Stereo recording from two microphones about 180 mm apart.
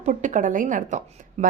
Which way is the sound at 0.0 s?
40° right (ahead or behind).